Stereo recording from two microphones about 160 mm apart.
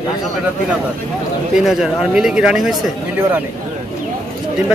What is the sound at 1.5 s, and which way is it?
Speech, centre (ahead or behind).